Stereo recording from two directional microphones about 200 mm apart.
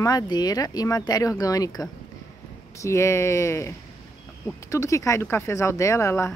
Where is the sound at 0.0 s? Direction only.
20° left (ahead or behind).